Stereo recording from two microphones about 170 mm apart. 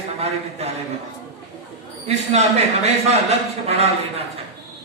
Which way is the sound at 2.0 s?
40° right (ahead or behind).